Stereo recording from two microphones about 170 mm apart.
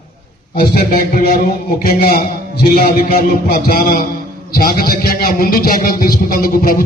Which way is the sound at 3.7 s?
55° left (ahead or behind).